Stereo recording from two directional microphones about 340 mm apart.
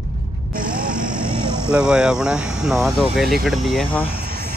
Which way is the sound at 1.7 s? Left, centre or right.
Centre.